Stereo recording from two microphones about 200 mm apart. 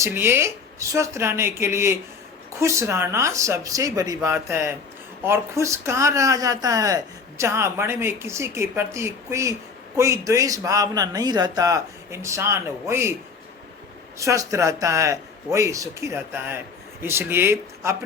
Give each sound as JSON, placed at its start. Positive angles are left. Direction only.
{"t": 0.0, "sound": "speech", "side_deg": -10}
{"t": 14.2, "sound": "speech", "side_deg": -15}